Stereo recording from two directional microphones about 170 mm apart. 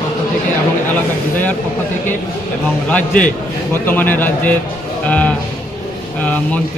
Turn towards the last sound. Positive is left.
turn(degrees=10)  # may be behind; listen again after turning